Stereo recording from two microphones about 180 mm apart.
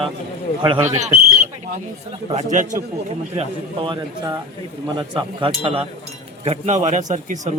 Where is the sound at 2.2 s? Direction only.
40° right (ahead or behind).